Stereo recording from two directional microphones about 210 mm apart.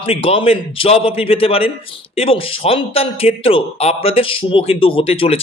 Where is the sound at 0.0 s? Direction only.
25° left (ahead or behind).